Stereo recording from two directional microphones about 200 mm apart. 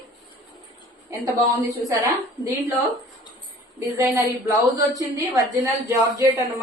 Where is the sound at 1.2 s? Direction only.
15° right (ahead or behind).